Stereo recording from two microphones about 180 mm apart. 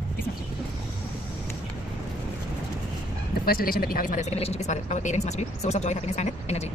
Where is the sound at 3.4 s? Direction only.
55° left (ahead or behind); by 6.7 s 35° left (ahead or behind).